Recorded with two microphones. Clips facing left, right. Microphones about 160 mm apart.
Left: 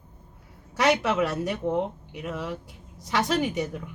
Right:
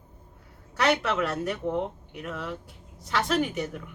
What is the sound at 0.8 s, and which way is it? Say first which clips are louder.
Speech: left 2 dB; 10° left (ahead or behind).